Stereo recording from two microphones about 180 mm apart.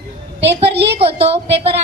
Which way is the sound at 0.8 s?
30° right (ahead or behind).